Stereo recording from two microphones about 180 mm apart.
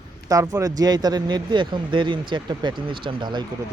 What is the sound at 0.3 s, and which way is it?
Speech, 20° right (ahead or behind).